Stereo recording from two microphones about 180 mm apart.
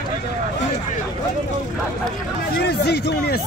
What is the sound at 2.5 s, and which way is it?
Speech, 65° left (ahead or behind).